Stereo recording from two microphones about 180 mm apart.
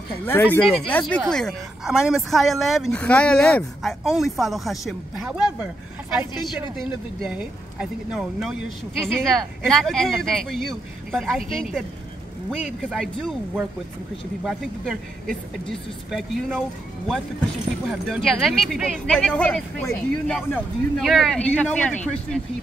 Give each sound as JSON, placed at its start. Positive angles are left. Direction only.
{"t": 0.2, "sound": "speech", "side_deg": 10}
{"t": 12.4, "sound": "speech", "side_deg": 0}
{"t": 14.4, "sound": "speech", "side_deg": -5}
{"t": 16.1, "sound": "speech", "side_deg": 0}
{"t": 17.8, "sound": "speech", "side_deg": 0}